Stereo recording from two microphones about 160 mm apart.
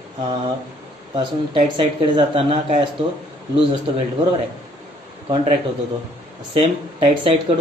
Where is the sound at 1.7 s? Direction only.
35° right (ahead or behind).